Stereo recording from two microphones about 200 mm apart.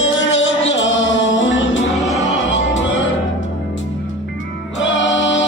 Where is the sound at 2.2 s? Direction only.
70° left (ahead or behind).